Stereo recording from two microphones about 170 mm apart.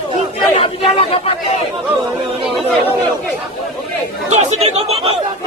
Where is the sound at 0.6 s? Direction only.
35° left (ahead or behind).